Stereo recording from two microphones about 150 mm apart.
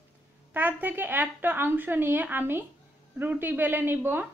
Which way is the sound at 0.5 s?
10° right (ahead or behind).